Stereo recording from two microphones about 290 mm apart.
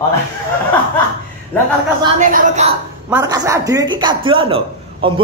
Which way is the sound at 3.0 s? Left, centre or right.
Centre.